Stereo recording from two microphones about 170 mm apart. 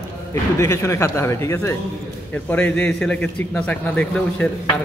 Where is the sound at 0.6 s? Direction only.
15° left (ahead or behind).